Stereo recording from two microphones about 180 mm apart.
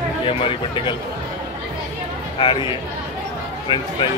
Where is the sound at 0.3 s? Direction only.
30° left (ahead or behind).